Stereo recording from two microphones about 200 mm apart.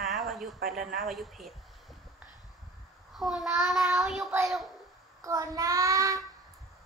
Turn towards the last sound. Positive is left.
turn(degrees=-15)  # may be behind; listen again after turning